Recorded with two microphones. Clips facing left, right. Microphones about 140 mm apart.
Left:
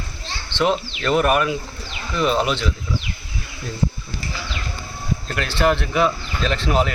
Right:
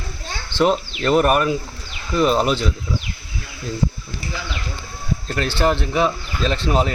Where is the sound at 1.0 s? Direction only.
40° right (ahead or behind).